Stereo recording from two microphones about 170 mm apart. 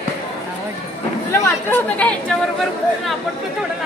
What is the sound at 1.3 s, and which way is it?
Speech, 10° left (ahead or behind).